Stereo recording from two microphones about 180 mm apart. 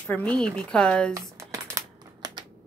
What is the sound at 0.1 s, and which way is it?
Speech, 5° left (ahead or behind).